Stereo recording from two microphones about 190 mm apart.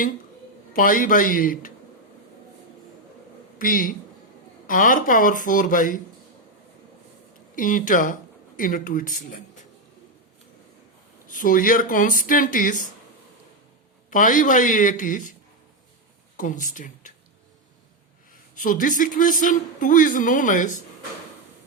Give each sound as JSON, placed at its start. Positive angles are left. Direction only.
{"t": 0.7, "sound": "speech", "side_deg": 45}
{"t": 3.6, "sound": "speech", "side_deg": 45}
{"t": 7.5, "sound": "speech", "side_deg": 45}
{"t": 11.3, "sound": "speech", "side_deg": 45}
{"t": 14.1, "sound": "speech", "side_deg": 45}
{"t": 16.4, "sound": "speech", "side_deg": 45}
{"t": 18.6, "sound": "speech", "side_deg": 45}